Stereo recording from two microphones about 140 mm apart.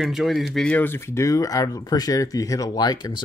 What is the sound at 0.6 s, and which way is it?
Speech, 10° left (ahead or behind).